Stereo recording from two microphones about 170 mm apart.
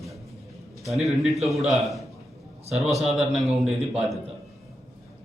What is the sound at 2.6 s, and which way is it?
Speech, 40° right (ahead or behind).